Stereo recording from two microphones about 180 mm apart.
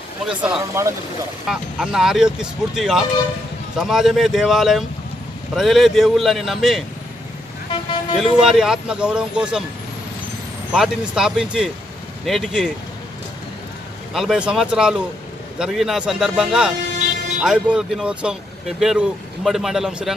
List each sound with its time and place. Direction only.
0.3 s speech: 5° right (ahead or behind)
7.7 s vehicle: 30° left (ahead or behind)
8.2 s speech: 5° right (ahead or behind)
10.7 s speech: 5° right (ahead or behind)
14.1 s speech: 5° right (ahead or behind)